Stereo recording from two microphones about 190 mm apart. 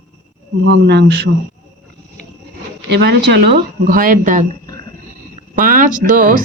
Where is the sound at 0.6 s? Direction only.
65° right (ahead or behind).